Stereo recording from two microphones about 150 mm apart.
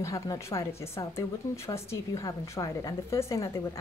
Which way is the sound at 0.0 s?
20° left (ahead or behind).